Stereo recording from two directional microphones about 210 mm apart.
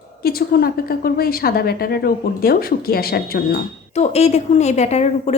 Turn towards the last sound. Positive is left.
turn(degrees=30)  # may be behind; listen again after turning